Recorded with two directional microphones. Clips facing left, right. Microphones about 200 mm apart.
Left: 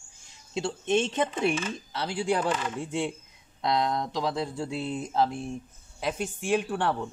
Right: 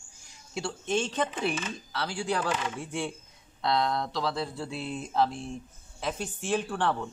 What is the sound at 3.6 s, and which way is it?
Speech, 15° left (ahead or behind).